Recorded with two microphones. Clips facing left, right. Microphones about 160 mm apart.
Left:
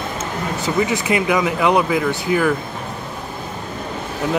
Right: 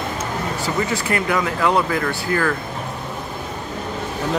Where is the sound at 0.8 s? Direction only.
15° left (ahead or behind).